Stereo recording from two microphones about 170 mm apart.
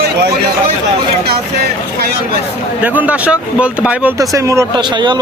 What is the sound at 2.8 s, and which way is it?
Speech, 10° right (ahead or behind).